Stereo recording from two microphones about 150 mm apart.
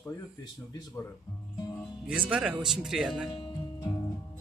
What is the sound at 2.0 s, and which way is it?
Speech, 5° right (ahead or behind).